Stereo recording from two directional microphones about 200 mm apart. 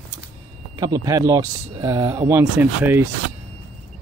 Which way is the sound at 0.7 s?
20° right (ahead or behind).